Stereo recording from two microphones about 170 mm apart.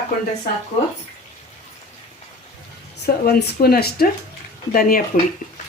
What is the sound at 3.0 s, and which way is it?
Speech, 65° left (ahead or behind).